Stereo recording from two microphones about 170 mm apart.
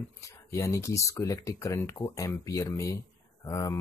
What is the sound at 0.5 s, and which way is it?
Speech, 20° left (ahead or behind).